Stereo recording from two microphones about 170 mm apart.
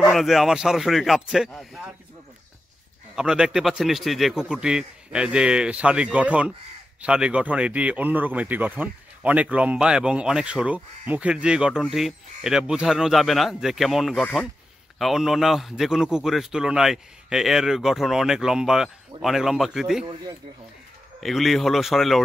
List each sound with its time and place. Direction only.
0.1 s speech: centre (ahead or behind)
3.2 s speech: 5° right (ahead or behind)
21.2 s speech: centre (ahead or behind)